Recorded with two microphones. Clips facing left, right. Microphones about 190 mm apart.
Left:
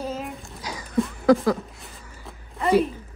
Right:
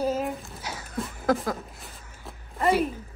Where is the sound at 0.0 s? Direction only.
Centre (ahead or behind).